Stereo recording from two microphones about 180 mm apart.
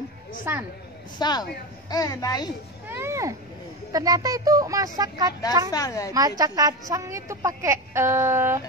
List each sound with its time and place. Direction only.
0.5 s a woman's voice: 10° right (ahead or behind)
1.1 s a child's voice: 25° left (ahead or behind)
2.9 s a woman's voice: 15° right (ahead or behind)
5.7 s a child's voice: 20° left (ahead or behind)
6.1 s a woman's voice: 20° right (ahead or behind)